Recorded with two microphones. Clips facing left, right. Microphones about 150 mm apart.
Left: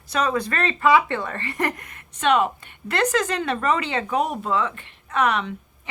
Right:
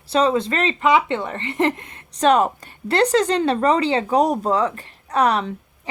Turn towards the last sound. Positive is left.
turn(degrees=-35)  # may be behind; listen again after turning